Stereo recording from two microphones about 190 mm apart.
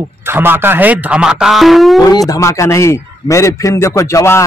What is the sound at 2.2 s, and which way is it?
A man's voice, 15° left (ahead or behind).